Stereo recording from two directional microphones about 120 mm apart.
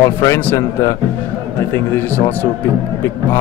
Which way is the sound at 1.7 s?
15° left (ahead or behind).